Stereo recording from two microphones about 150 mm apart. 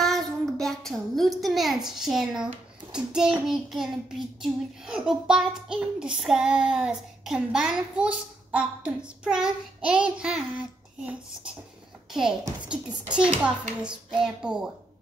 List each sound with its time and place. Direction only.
0.0 s a child's voice: centre (ahead or behind)
12.1 s a child's voice: 5° right (ahead or behind)